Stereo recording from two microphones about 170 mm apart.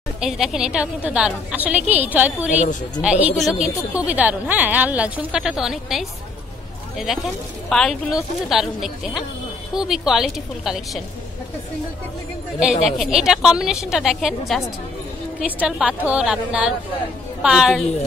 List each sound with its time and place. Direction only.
0.2 s a woman's voice: centre (ahead or behind)
7.7 s a woman's voice: 5° left (ahead or behind)
12.5 s a woman's voice: 5° right (ahead or behind)
15.6 s a woman's voice: 5° right (ahead or behind)